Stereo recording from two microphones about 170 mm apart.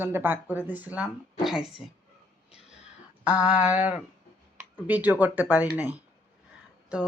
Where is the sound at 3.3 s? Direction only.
10° right (ahead or behind).